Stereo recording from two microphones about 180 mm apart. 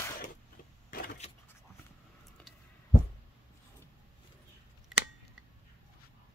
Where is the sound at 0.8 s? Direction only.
50° left (ahead or behind).